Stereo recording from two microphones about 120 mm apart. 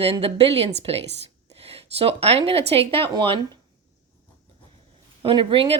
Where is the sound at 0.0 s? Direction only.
50° right (ahead or behind).